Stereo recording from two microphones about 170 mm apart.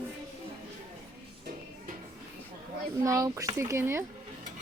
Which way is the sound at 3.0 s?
20° right (ahead or behind).